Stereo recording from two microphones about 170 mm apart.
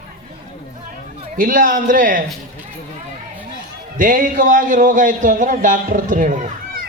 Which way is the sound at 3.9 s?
50° right (ahead or behind).